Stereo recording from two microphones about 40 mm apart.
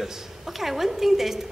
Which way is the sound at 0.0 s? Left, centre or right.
Centre.